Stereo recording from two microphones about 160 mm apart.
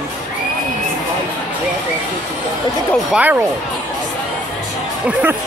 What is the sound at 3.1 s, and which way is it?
Speech, 10° right (ahead or behind).